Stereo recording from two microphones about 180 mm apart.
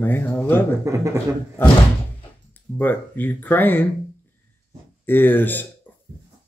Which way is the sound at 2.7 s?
10° left (ahead or behind).